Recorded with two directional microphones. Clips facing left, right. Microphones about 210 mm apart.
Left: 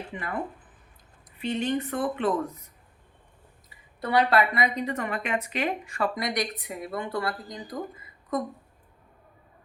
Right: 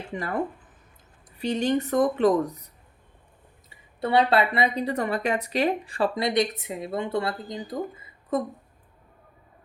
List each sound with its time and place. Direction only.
0.1 s speech: 40° right (ahead or behind)
4.0 s speech: 25° right (ahead or behind)